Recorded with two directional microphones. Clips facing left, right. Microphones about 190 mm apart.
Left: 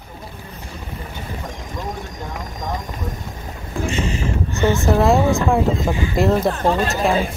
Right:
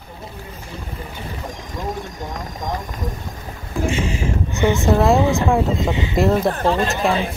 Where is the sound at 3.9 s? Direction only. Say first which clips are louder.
Left 1 dB; 10° right (ahead or behind).